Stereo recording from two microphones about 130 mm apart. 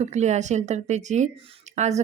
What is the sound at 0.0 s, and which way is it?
A woman's voice, 60° right (ahead or behind).